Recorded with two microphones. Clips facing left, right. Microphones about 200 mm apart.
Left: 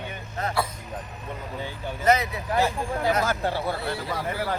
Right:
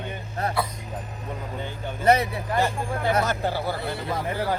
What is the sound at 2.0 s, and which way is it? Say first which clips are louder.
Speech: right 2 dB; 30° right (ahead or behind).